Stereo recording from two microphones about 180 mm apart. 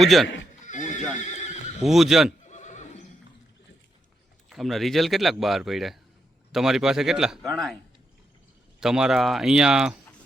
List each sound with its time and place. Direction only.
0.0 s speech: centre (ahead or behind)
0.6 s neigh: 45° left (ahead or behind)
1.8 s speech: centre (ahead or behind)
2.5 s neigh: 40° left (ahead or behind)
4.4 s speech: centre (ahead or behind)
8.8 s speech: 5° right (ahead or behind)